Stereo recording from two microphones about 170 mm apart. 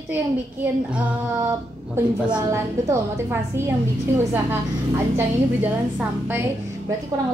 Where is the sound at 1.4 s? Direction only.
25° right (ahead or behind).